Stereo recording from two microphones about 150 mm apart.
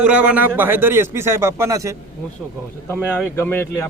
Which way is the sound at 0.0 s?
10° right (ahead or behind).